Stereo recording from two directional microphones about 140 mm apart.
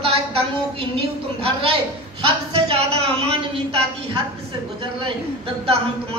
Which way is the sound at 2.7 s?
45° right (ahead or behind).